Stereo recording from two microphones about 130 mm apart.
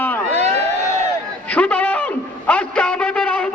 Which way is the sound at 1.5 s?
10° left (ahead or behind).